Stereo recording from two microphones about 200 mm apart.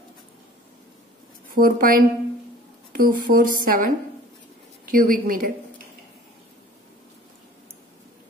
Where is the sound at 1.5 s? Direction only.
45° right (ahead or behind).